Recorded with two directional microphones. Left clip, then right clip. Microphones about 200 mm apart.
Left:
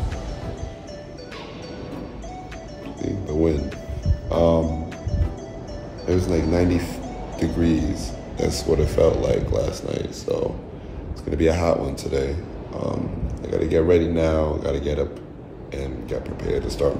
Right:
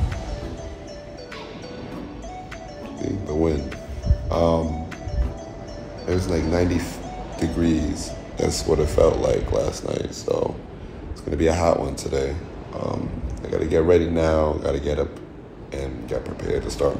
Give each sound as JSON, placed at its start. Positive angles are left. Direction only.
{"t": 3.1, "sound": "speech", "side_deg": 5}
{"t": 6.0, "sound": "speech", "side_deg": 15}
{"t": 13.5, "sound": "speech", "side_deg": 5}